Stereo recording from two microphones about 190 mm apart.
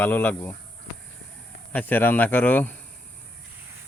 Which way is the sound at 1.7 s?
10° left (ahead or behind).